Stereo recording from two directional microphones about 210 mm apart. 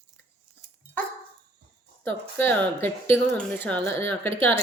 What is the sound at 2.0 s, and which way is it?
A child's voice, 10° left (ahead or behind).